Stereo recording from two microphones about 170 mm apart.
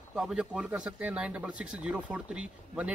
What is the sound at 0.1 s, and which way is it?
Speech, 5° right (ahead or behind).